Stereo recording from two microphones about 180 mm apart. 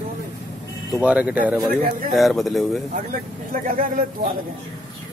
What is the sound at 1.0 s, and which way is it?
Speech, 5° right (ahead or behind).